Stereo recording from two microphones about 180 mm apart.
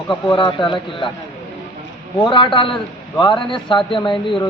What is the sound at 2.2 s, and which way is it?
Speech, 25° left (ahead or behind).